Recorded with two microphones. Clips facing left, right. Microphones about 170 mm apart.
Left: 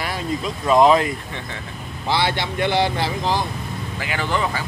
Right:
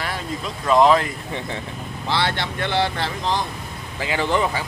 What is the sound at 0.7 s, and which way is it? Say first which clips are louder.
Speech: left 1 dB; 15° left (ahead or behind).